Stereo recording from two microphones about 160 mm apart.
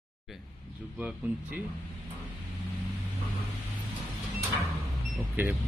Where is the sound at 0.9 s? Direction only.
10° right (ahead or behind).